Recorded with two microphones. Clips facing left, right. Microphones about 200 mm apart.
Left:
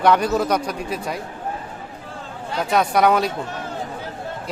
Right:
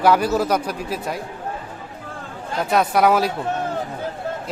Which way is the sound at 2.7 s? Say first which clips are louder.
Even; 5° right (ahead or behind).